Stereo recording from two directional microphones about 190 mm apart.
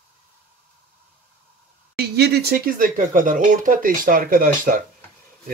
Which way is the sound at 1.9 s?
60° right (ahead or behind).